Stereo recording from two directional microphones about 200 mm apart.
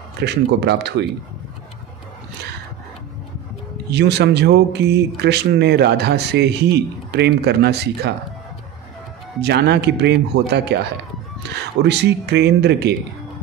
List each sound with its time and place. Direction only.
0.2 s speech: 55° right (ahead or behind)
3.9 s speech: 55° right (ahead or behind)
9.4 s speech: 55° right (ahead or behind)